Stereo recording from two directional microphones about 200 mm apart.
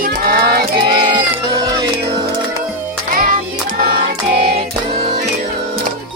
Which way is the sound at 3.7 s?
50° right (ahead or behind).